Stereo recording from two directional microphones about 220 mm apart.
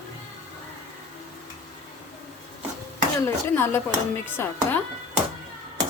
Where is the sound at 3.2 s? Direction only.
10° left (ahead or behind).